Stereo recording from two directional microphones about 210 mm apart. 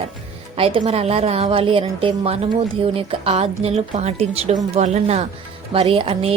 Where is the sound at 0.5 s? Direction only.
25° right (ahead or behind).